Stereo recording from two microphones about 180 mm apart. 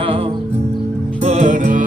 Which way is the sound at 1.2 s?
40° right (ahead or behind).